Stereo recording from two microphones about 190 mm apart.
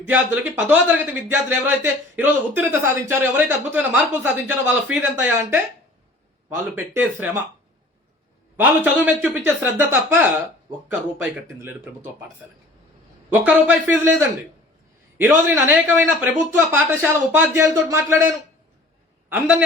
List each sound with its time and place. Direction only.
0.1 s speech: 10° right (ahead or behind)
6.7 s speech: 10° right (ahead or behind)
8.5 s speech: 5° right (ahead or behind)
13.4 s speech: 10° right (ahead or behind)